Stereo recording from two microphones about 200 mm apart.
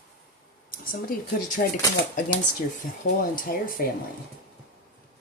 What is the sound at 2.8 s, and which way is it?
Speech, 40° left (ahead or behind).